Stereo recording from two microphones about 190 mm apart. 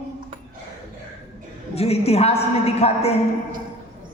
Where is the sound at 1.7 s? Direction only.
35° left (ahead or behind).